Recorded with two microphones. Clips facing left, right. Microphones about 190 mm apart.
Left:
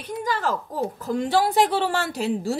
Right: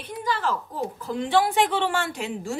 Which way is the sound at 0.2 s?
45° left (ahead or behind).